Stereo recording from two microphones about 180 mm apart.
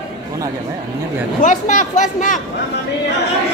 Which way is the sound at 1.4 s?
45° left (ahead or behind).